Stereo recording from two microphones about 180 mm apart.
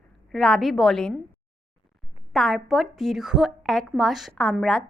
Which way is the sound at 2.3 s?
Centre (ahead or behind).